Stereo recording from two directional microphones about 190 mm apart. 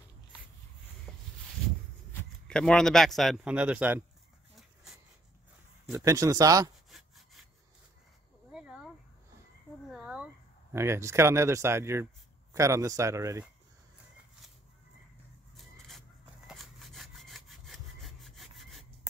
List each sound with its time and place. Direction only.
2.1 s speech: 5° left (ahead or behind)
5.9 s speech: 15° right (ahead or behind)
6.9 s sawing: centre (ahead or behind)
8.5 s a sound: 5° right (ahead or behind)
12.5 s speech: 15° right (ahead or behind)
16.4 s sawing: centre (ahead or behind)